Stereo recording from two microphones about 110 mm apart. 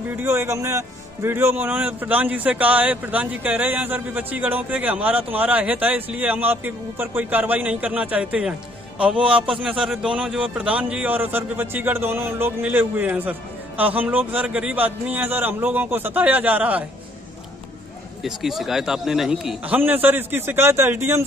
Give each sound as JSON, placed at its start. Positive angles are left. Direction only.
{"t": 0.2, "sound": "a man's voice", "side_deg": -25}
{"t": 9.6, "sound": "a man's voice", "side_deg": -5}
{"t": 18.2, "sound": "a man's voice", "side_deg": 0}